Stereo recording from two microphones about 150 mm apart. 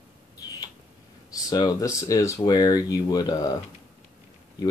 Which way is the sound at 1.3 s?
25° left (ahead or behind).